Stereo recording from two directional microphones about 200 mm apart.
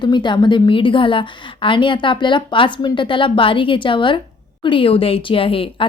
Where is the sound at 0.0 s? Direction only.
25° left (ahead or behind).